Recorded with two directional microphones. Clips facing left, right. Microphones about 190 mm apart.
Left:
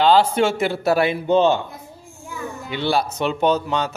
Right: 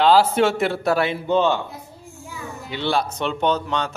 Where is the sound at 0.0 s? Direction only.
5° right (ahead or behind).